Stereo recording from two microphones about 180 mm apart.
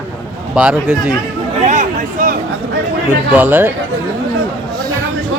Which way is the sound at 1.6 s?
45° right (ahead or behind).